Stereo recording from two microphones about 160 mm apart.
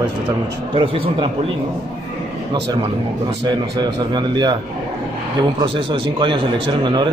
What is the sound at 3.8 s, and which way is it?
Speech, 25° right (ahead or behind).